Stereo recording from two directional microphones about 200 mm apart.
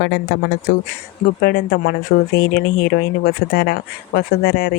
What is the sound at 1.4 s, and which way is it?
Speech, 50° left (ahead or behind).